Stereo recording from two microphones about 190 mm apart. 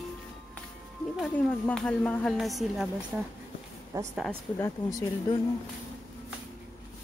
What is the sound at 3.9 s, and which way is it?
Speech, 15° right (ahead or behind).